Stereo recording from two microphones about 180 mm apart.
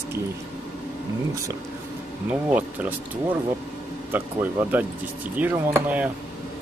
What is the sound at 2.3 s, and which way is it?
Speech, 10° right (ahead or behind).